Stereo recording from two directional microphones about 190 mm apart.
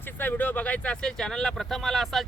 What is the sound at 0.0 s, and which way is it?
Speech, 10° left (ahead or behind).